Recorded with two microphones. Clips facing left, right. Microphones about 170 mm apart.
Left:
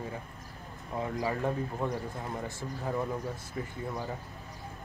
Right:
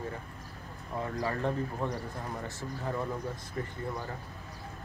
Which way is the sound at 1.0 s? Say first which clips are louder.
Left 1 dB; 15° left (ahead or behind).